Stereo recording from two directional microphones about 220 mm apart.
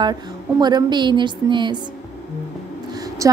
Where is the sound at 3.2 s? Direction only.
15° right (ahead or behind).